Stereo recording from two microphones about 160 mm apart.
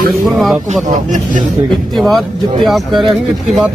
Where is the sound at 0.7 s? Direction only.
50° right (ahead or behind).